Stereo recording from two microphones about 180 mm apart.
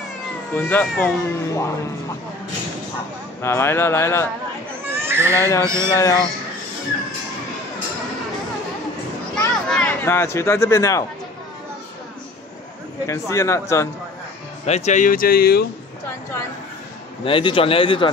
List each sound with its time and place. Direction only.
0.6 s speech: 10° left (ahead or behind)
3.4 s speech: 15° left (ahead or behind)
4.9 s a sound: 15° right (ahead or behind)
5.8 s a man's voice: 20° left (ahead or behind)
9.3 s a sound: 5° left (ahead or behind)
13.0 s speech: 15° left (ahead or behind)
14.7 s speech: 45° left (ahead or behind)
17.2 s a man's voice: 30° left (ahead or behind)